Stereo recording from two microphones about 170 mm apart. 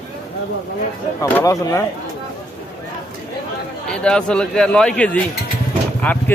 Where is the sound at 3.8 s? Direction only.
5° left (ahead or behind).